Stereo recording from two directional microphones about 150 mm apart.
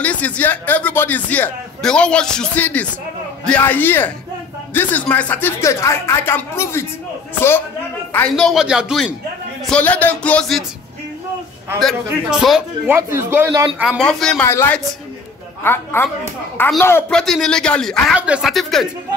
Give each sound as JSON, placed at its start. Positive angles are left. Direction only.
{"t": 0.0, "sound": "speech", "side_deg": 10}
{"t": 8.5, "sound": "a man's voice", "side_deg": -5}
{"t": 9.7, "sound": "speech", "side_deg": 10}
{"t": 11.8, "sound": "a man's voice", "side_deg": -5}
{"t": 12.9, "sound": "speech", "side_deg": -15}
{"t": 13.7, "sound": "a man's voice", "side_deg": -5}
{"t": 14.4, "sound": "speech", "side_deg": 15}
{"t": 17.1, "sound": "a man's voice", "side_deg": 0}